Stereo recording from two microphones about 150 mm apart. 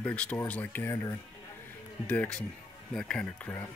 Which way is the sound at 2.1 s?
10° left (ahead or behind).